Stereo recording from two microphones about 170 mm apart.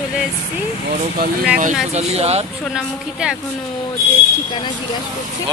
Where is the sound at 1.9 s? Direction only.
40° right (ahead or behind).